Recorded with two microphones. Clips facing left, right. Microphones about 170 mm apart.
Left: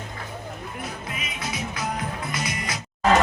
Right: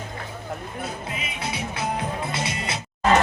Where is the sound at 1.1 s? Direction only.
30° right (ahead or behind).